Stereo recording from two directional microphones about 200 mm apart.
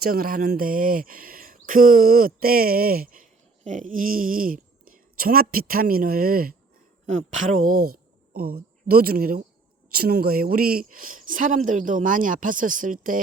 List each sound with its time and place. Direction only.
0.0 s speech: 50° right (ahead or behind)
7.6 s speech: 90° right
8.3 s speech: 50° right (ahead or behind)